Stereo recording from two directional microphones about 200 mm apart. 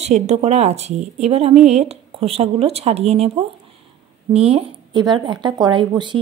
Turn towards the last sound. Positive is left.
turn(degrees=-25)  # may be behind; listen again after turning